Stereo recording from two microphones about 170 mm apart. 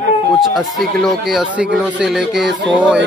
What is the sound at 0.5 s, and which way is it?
Speech, centre (ahead or behind).